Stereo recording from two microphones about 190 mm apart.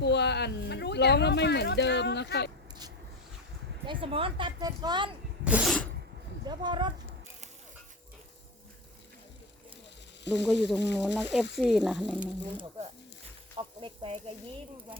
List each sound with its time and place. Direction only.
0.0 s speech: 65° left (ahead or behind)
3.8 s speech: 30° right (ahead or behind)
5.5 s sneeze: 5° right (ahead or behind)
6.4 s speech: 25° right (ahead or behind)
10.2 s speech: 65° left (ahead or behind)
11.5 s speech: 5° right (ahead or behind)
13.6 s sizzle: 30° right (ahead or behind)